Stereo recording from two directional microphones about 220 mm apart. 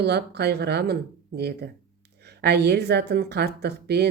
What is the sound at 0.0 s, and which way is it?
A woman's voice, 50° right (ahead or behind).